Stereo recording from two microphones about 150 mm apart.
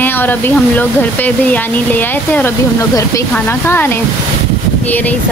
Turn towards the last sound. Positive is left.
turn(degrees=15)  # may be behind; listen again after turning